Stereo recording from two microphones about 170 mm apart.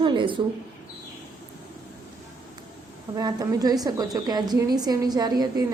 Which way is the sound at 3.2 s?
25° right (ahead or behind).